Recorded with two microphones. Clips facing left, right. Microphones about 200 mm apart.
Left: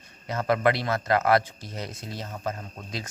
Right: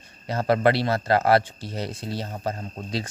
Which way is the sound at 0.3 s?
30° right (ahead or behind).